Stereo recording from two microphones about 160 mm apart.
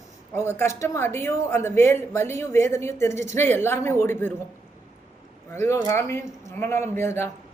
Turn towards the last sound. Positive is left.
turn(degrees=15)  # may be behind; listen again after turning